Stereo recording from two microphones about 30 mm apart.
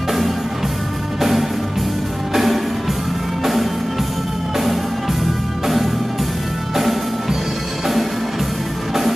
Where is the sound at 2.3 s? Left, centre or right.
Centre.